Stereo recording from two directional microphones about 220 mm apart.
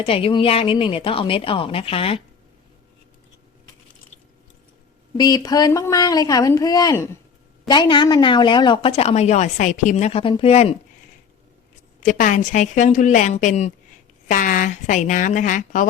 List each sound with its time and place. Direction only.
0.0 s speech: 25° left (ahead or behind)
5.1 s speech: 20° left (ahead or behind)
11.9 s a woman's voice: 35° left (ahead or behind)